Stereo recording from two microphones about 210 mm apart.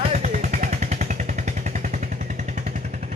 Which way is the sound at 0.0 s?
35° right (ahead or behind).